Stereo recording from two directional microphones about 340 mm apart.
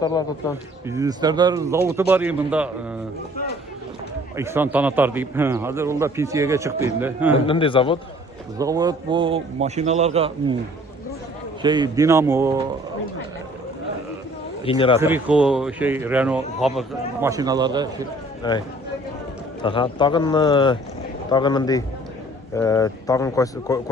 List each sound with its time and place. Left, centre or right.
0.0 s speech: centre
0.9 s a man's voice: centre
4.4 s a man's voice: centre
7.4 s speech: centre
8.5 s a man's voice: centre
11.6 s a man's voice: centre
14.6 s speech: centre
15.0 s speech: centre
18.4 s speech: centre
19.6 s speech: centre